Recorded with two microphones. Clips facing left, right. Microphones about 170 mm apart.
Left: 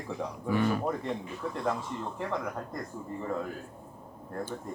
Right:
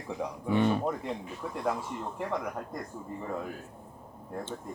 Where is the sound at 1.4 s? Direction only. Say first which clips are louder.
Right 1 dB; 10° right (ahead or behind).